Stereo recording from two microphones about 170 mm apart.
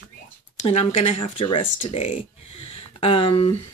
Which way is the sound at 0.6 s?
35° left (ahead or behind).